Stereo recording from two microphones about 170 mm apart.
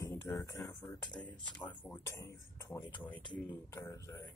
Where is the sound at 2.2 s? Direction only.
20° left (ahead or behind).